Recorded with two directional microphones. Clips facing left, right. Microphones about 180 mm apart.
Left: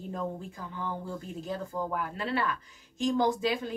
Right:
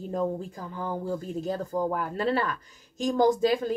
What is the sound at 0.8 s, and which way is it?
Speech, 40° right (ahead or behind).